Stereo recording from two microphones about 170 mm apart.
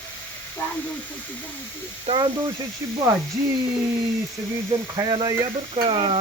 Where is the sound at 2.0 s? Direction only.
30° right (ahead or behind).